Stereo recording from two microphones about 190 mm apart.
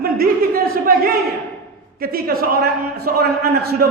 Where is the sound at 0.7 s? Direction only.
50° right (ahead or behind).